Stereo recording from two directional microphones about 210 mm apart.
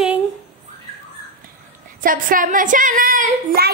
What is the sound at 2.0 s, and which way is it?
A woman's voice, 40° right (ahead or behind).